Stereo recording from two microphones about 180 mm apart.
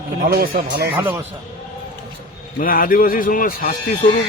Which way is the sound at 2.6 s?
55° left (ahead or behind).